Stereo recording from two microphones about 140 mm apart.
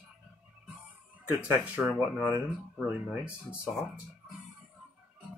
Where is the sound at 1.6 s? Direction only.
10° right (ahead or behind).